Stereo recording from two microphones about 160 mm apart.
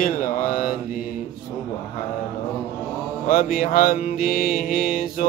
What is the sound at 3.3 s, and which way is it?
Mantra, 65° left (ahead or behind).